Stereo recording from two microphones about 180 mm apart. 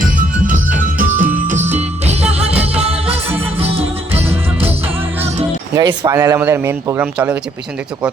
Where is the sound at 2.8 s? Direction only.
35° right (ahead or behind).